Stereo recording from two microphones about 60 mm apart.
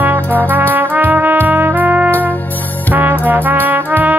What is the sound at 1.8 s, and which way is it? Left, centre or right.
Trumpet, right.